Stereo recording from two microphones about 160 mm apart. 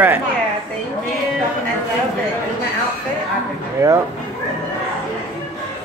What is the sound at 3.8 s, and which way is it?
Speech, 20° right (ahead or behind).